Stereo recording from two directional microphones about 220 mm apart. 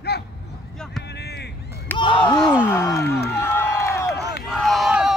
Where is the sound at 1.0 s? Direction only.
50° left (ahead or behind).